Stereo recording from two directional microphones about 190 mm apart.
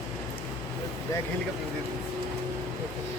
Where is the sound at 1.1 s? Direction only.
15° left (ahead or behind).